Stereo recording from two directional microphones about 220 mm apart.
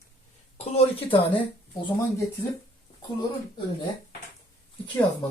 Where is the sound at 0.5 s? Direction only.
30° left (ahead or behind).